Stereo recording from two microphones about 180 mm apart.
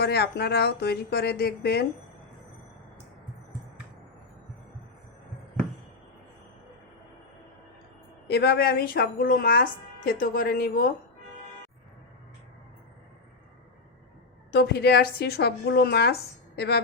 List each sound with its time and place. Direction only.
0.0 s speech: 65° left (ahead or behind)
8.3 s speech: 60° left (ahead or behind)
14.5 s speech: 65° left (ahead or behind)